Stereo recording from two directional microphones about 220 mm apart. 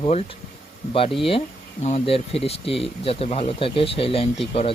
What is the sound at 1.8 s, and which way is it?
Speech, 25° left (ahead or behind).